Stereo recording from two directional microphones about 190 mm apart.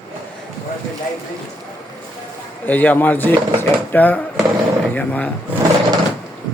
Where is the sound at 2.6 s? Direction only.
10° left (ahead or behind).